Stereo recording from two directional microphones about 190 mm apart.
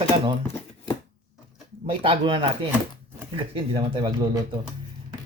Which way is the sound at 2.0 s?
25° right (ahead or behind).